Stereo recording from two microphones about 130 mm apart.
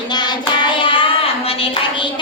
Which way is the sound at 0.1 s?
35° left (ahead or behind).